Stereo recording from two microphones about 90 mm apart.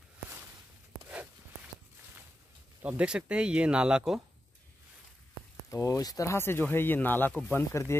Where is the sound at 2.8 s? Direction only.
15° right (ahead or behind).